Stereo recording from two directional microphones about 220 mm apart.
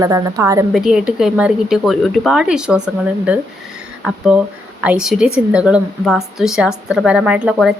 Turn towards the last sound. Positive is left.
turn(degrees=-5)  # may be behind; listen again after turning